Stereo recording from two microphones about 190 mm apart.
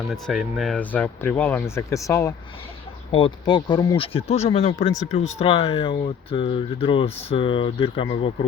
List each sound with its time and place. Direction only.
0.1 s speech: centre (ahead or behind); by 2.3 s 15° left (ahead or behind)
3.1 s speech: 30° left (ahead or behind)